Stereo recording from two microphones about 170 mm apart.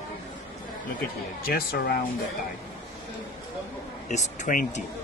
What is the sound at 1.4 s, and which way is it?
Speech, 65° left (ahead or behind).